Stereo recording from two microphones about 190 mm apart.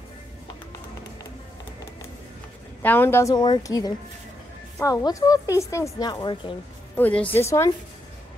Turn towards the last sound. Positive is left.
turn(degrees=15)  # may be behind; listen again after turning